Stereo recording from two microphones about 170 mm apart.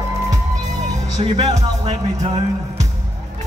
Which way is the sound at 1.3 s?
30° right (ahead or behind).